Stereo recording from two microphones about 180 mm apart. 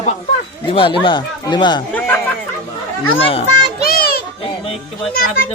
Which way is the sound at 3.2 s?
35° left (ahead or behind).